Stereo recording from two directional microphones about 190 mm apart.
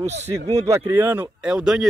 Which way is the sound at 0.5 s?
15° right (ahead or behind).